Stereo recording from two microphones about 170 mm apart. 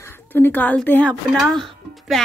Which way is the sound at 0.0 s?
15° left (ahead or behind).